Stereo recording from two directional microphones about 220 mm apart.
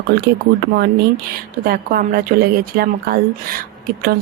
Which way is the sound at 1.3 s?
40° right (ahead or behind).